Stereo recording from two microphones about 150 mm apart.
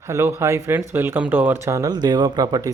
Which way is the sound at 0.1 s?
15° right (ahead or behind).